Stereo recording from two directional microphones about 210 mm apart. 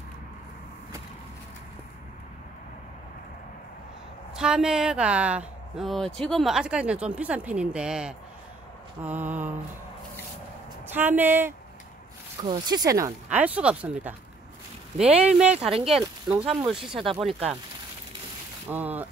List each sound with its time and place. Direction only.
4.4 s speech: 5° right (ahead or behind)
10.9 s speech: 10° right (ahead or behind)
15.0 s speech: 30° right (ahead or behind)
15.3 s speech: 5° right (ahead or behind)
18.7 s speech: 10° right (ahead or behind)